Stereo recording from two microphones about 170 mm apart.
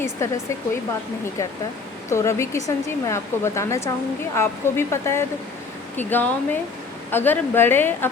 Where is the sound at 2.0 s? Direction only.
15° left (ahead or behind).